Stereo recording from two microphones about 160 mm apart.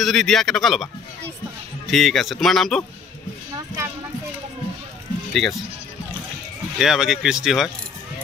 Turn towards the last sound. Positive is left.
turn(degrees=-5)  # may be behind; listen again after turning